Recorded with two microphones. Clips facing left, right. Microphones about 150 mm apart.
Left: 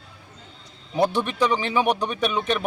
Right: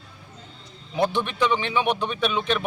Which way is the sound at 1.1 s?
40° left (ahead or behind).